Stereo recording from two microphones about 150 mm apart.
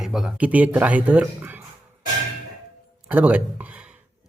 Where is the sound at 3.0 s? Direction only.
10° right (ahead or behind).